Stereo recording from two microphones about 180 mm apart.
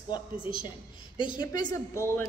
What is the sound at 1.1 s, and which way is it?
Speech, 25° left (ahead or behind).